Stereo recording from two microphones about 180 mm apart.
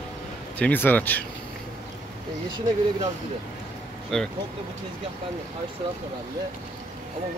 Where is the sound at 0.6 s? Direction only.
10° left (ahead or behind).